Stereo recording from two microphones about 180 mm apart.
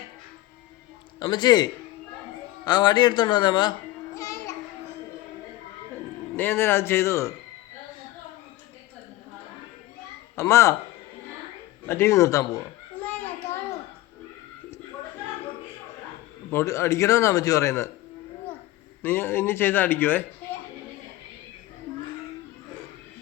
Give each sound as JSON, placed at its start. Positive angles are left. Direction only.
{"t": 1.2, "sound": "a man's voice", "side_deg": 25}
{"t": 6.3, "sound": "speech", "side_deg": 10}
{"t": 10.3, "sound": "speech", "side_deg": 15}
{"t": 11.9, "sound": "speech", "side_deg": 15}
{"t": 13.0, "sound": "a sound", "side_deg": 10}
{"t": 16.5, "sound": "speech", "side_deg": 15}
{"t": 19.0, "sound": "speech", "side_deg": 10}